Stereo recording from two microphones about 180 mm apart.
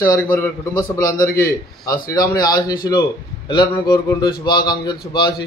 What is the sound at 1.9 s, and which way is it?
A man's voice, 20° left (ahead or behind).